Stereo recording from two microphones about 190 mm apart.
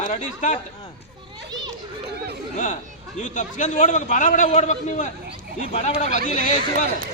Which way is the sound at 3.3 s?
40° left (ahead or behind).